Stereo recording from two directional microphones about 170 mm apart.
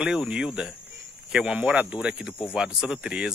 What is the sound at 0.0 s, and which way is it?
A man's voice, 5° right (ahead or behind).